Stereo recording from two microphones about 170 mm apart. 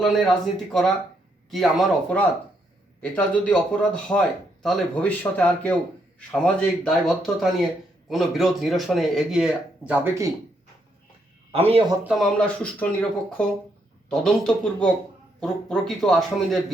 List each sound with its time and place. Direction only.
0.0 s speech: 5° left (ahead or behind)
11.5 s speech: 35° right (ahead or behind)
12.0 s speech: centre (ahead or behind)